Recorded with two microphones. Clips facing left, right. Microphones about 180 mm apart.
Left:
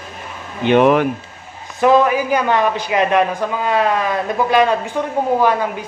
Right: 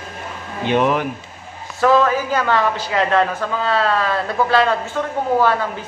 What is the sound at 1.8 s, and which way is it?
Speech, 15° left (ahead or behind).